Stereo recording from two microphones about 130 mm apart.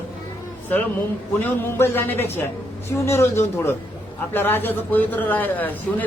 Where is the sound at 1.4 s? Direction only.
15° left (ahead or behind).